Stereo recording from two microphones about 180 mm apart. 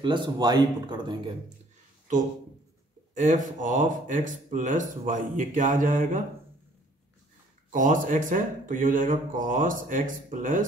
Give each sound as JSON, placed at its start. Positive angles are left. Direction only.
{"t": 0.0, "sound": "speech", "side_deg": -25}
{"t": 3.2, "sound": "speech", "side_deg": -45}
{"t": 7.7, "sound": "speech", "side_deg": -45}